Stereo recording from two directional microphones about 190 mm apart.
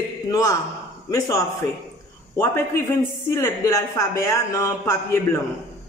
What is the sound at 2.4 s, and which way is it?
A woman's voice, 15° left (ahead or behind).